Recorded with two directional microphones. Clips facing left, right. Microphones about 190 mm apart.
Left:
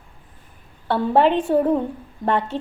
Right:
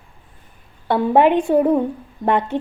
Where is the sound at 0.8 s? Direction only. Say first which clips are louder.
Right 3 dB; 15° right (ahead or behind).